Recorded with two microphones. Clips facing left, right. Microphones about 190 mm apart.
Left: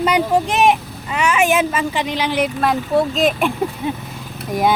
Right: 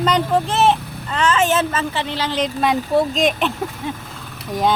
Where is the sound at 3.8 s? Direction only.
20° left (ahead or behind).